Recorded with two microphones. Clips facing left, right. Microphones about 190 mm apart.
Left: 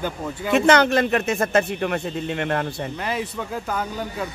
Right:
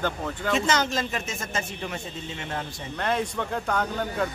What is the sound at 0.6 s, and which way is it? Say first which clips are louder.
Speech: left 11 dB; 60° left (ahead or behind).